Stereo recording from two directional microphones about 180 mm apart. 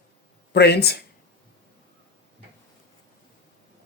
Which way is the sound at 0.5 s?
65° left (ahead or behind).